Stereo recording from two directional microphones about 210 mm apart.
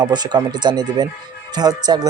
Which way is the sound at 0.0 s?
20° right (ahead or behind).